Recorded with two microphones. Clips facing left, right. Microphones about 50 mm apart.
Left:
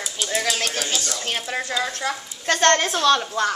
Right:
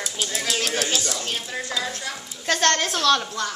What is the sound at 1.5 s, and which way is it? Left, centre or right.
Speech, left.